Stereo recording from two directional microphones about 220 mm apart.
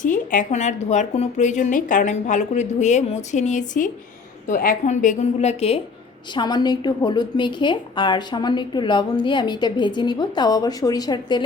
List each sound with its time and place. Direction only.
0.0 s a woman's voice: 35° left (ahead or behind); by 11.4 s 20° left (ahead or behind)